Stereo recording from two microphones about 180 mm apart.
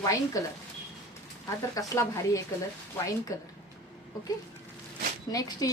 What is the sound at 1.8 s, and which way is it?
Speech, 20° left (ahead or behind).